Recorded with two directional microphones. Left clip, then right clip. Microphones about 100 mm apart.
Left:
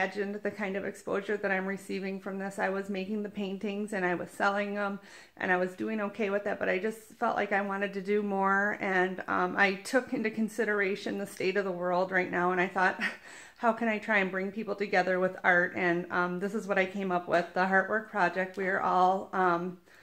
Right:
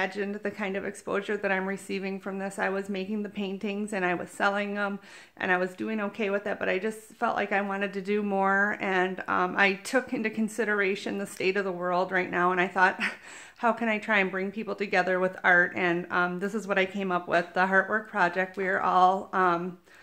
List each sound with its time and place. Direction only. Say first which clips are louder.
0.0 s a woman's voice: right 1 dB; 20° right (ahead or behind)